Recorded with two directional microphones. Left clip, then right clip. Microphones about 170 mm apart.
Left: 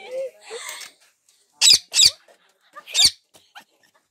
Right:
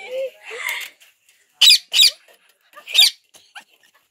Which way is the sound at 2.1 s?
55° left (ahead or behind).